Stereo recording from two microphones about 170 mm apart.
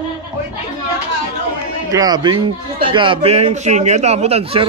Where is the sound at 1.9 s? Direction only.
20° right (ahead or behind).